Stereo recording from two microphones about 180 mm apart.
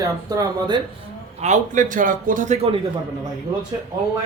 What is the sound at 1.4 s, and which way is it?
A man's voice, 45° right (ahead or behind).